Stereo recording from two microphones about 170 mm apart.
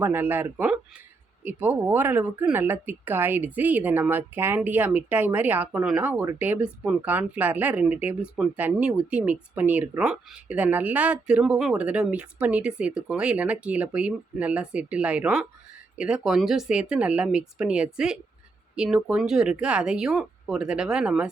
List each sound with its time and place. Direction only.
0.0 s speech: 15° right (ahead or behind)